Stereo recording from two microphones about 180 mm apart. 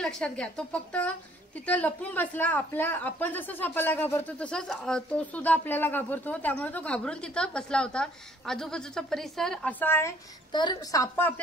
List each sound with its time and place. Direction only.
0.0 s a woman's voice: 5° left (ahead or behind)
10.5 s a woman's voice: 25° left (ahead or behind)